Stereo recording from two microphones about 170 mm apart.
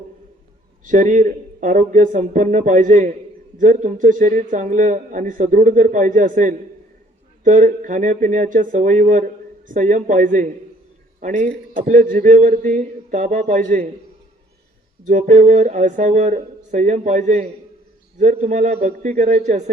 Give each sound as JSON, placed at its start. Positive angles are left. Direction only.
{"t": 0.9, "sound": "speech", "side_deg": -45}
{"t": 15.0, "sound": "speech", "side_deg": -50}